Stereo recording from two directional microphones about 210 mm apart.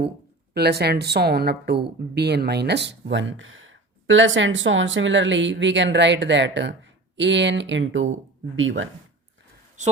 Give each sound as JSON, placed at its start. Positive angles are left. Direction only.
{"t": 0.5, "sound": "a woman's voice", "side_deg": -50}